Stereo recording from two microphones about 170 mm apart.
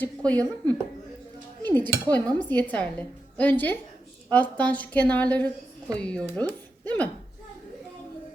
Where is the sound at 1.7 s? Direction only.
10° left (ahead or behind).